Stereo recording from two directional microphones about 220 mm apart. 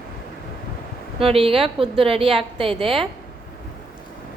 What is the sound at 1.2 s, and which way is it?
A woman's voice, 25° right (ahead or behind).